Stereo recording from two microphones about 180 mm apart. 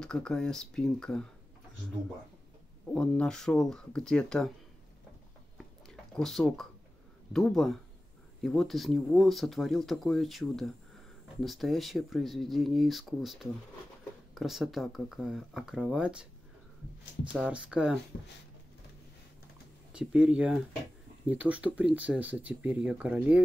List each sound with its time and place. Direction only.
0.0 s speech: 5° left (ahead or behind)
2.9 s speech: 5° left (ahead or behind)
5.9 s a sound: centre (ahead or behind)
7.3 s speech: centre (ahead or behind)
19.9 s speech: 5° right (ahead or behind)